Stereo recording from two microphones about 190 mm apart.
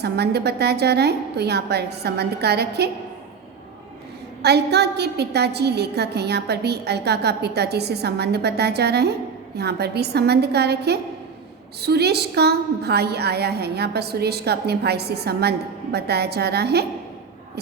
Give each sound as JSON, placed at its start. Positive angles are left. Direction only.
{"t": 0.0, "sound": "a woman's voice", "side_deg": -60}
{"t": 4.4, "sound": "a woman's voice", "side_deg": -60}